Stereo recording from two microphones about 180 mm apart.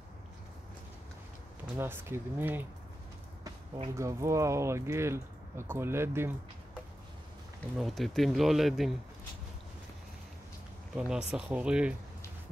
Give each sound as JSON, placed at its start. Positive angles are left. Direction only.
{"t": 1.8, "sound": "speech", "side_deg": -15}
{"t": 3.4, "sound": "a sound", "side_deg": -30}
{"t": 3.9, "sound": "speech", "side_deg": -15}
{"t": 7.7, "sound": "speech", "side_deg": 0}
{"t": 11.0, "sound": "speech", "side_deg": -5}